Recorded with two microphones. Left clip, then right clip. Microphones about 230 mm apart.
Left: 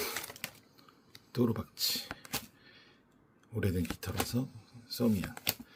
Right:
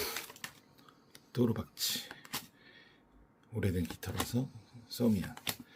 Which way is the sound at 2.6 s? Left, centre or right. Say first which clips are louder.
Even; centre.